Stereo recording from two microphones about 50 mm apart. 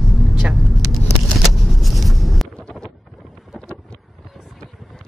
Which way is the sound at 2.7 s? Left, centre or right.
Centre.